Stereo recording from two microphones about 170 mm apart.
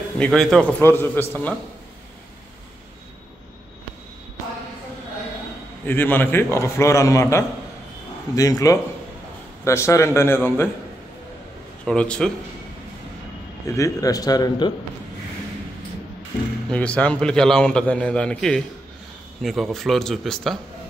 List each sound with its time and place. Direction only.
0.2 s a man's voice: centre (ahead or behind)
5.9 s a man's voice: 10° left (ahead or behind)
11.8 s a man's voice: 5° left (ahead or behind)
13.7 s a man's voice: 20° left (ahead or behind)
16.6 s a man's voice: 5° left (ahead or behind)